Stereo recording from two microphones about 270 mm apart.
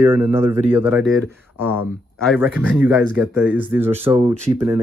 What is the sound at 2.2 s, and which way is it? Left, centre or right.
Speech, centre.